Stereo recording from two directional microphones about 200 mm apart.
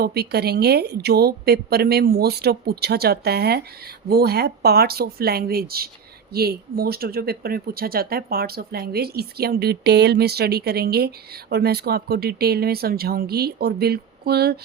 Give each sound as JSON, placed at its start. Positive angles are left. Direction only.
{"t": 0.0, "sound": "speech", "side_deg": -50}